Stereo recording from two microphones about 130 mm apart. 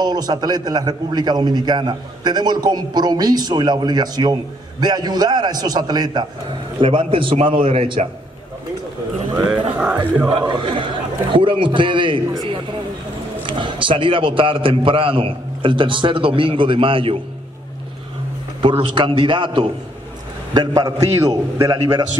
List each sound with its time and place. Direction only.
0.0 s a man's voice: 30° right (ahead or behind); by 8.1 s 50° right (ahead or behind)
9.5 s speech: 10° right (ahead or behind)
10.2 s a man's voice: 35° right (ahead or behind)
13.5 s a man's voice: 40° right (ahead or behind)
18.6 s a man's voice: 40° right (ahead or behind)
20.5 s a man's voice: 25° right (ahead or behind)